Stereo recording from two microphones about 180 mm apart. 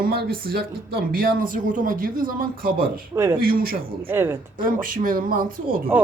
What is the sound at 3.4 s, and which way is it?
Speech, 55° right (ahead or behind).